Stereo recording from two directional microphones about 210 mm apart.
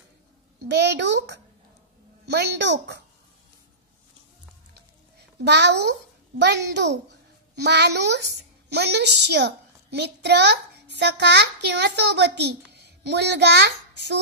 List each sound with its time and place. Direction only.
0.7 s a child's voice: 55° right (ahead or behind)
5.4 s a child's voice: 55° right (ahead or behind)
12.7 s a sound: 55° right (ahead or behind)